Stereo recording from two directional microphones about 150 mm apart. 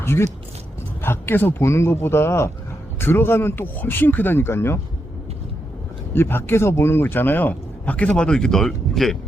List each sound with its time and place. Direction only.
0.0 s a man's voice: 15° left (ahead or behind)
6.1 s a man's voice: 15° left (ahead or behind)